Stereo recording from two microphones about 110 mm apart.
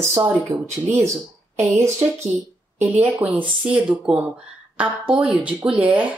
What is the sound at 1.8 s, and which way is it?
Speech, 25° right (ahead or behind).